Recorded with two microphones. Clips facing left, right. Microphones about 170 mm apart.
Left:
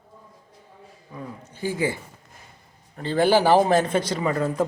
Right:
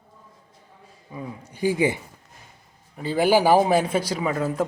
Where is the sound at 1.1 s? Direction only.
10° right (ahead or behind).